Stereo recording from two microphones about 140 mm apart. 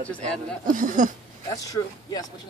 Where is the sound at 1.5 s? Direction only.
25° left (ahead or behind).